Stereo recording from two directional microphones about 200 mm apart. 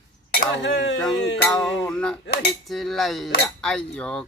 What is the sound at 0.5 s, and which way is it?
Speech, 60° left (ahead or behind).